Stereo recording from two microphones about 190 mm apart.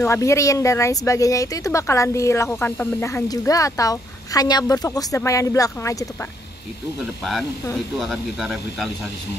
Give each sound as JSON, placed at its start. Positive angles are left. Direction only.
{"t": 0.0, "sound": "speech", "side_deg": 15}
{"t": 8.0, "sound": "speech", "side_deg": 0}